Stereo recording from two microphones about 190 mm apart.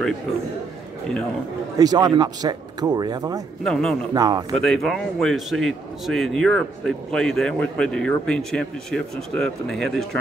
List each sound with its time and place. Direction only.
1.8 s speech: 20° right (ahead or behind)
3.6 s speech: centre (ahead or behind)
4.1 s speech: 20° right (ahead or behind)
4.6 s speech: centre (ahead or behind)